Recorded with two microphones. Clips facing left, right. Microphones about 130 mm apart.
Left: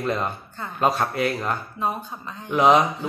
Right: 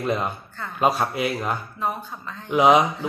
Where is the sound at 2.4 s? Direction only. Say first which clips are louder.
Right 1 dB; 10° right (ahead or behind).